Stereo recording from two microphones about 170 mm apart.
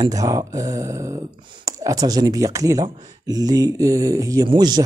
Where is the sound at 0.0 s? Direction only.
20° right (ahead or behind).